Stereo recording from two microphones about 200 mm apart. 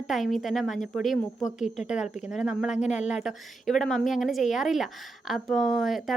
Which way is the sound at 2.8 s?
35° left (ahead or behind).